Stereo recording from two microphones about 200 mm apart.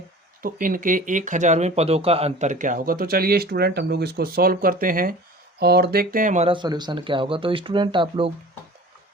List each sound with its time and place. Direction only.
0.4 s speech: 45° right (ahead or behind); by 8.3 s 25° right (ahead or behind)